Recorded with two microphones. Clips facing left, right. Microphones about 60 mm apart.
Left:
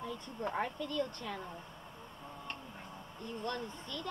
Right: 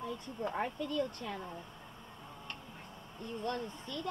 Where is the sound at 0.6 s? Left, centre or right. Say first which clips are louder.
Right 1 dB; centre.